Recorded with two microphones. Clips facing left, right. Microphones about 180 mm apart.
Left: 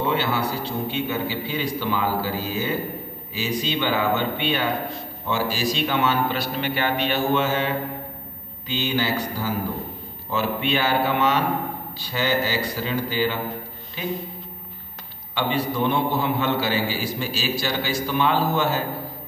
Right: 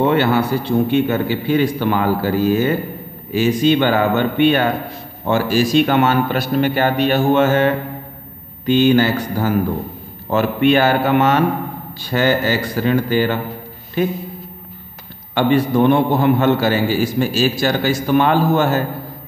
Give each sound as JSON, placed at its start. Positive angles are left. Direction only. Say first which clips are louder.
{"t": 0.0, "sound": "a man's voice", "louder": "right 8 dB", "side_deg": -55}
{"t": 15.3, "sound": "a man's voice", "louder": "right 9 dB", "side_deg": -55}